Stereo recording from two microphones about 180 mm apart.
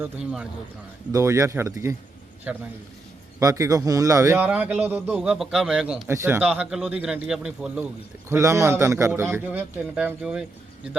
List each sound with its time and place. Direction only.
0.0 s speech: 5° right (ahead or behind)
1.1 s a man's voice: 15° right (ahead or behind)
8.3 s a man's voice: 15° right (ahead or behind)